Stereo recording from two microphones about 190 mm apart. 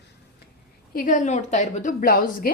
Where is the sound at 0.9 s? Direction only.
45° left (ahead or behind).